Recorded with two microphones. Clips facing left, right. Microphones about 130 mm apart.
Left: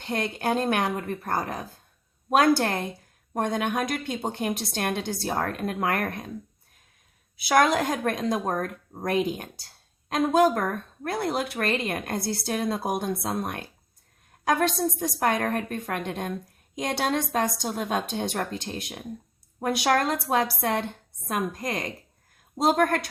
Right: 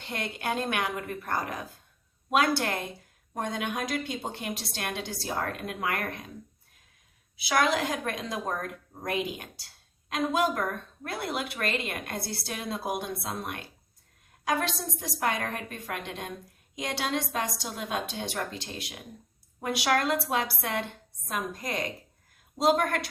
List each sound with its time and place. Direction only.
0.0 s a woman's voice: 40° left (ahead or behind)
3.3 s speech: 55° left (ahead or behind)
7.3 s speech: 45° left (ahead or behind)
15.0 s a woman's voice: 45° left (ahead or behind)